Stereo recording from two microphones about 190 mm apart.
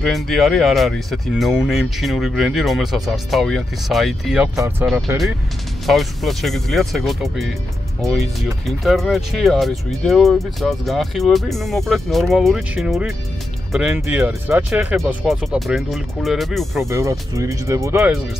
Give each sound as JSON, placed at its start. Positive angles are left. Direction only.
{"t": 0.0, "sound": "speech", "side_deg": 0}
{"t": 16.9, "sound": "speech", "side_deg": -15}